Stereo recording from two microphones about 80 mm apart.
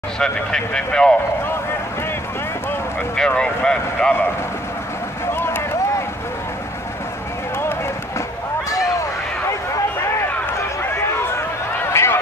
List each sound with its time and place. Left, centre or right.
0.2 s speech: centre
3.2 s speech: centre
5.2 s a sound: left
10.8 s run: left